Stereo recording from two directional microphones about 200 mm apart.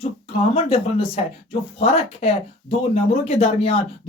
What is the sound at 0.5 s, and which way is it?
Speech, 30° left (ahead or behind).